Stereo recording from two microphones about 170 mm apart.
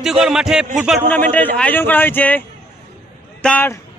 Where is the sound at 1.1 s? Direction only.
10° left (ahead or behind).